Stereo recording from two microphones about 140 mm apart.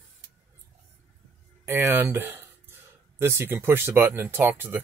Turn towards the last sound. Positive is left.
turn(degrees=-15)  # may be behind; listen again after turning